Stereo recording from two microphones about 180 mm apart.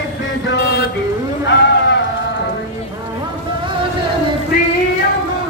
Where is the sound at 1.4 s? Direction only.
80° left.